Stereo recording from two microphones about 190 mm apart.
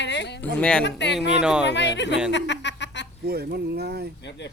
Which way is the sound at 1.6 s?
65° left (ahead or behind).